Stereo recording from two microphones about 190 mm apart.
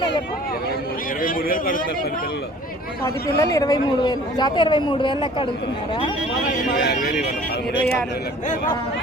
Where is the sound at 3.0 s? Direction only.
15° left (ahead or behind).